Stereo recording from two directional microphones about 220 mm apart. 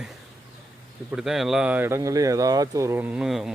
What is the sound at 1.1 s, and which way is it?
Speech, centre (ahead or behind).